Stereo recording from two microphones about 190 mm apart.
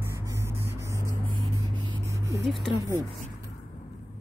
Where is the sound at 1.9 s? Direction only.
15° right (ahead or behind).